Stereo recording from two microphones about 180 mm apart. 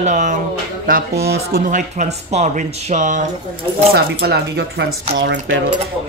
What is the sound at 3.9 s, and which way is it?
A man's voice, 60° right (ahead or behind).